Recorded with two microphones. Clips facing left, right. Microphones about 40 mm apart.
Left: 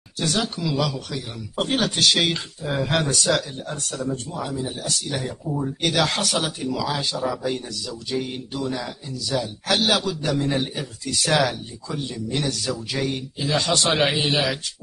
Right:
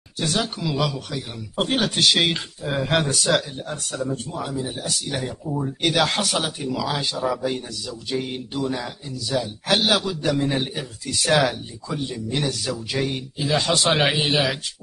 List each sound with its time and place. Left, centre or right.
0.2 s speech: centre